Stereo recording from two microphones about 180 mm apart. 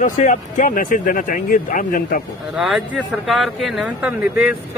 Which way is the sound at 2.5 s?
Centre (ahead or behind).